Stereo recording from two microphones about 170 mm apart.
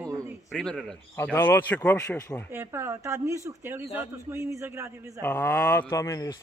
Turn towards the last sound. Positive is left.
turn(degrees=20)  # may be behind; listen again after turning